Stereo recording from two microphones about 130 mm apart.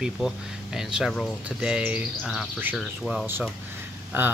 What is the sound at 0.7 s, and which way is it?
Speech, 5° right (ahead or behind).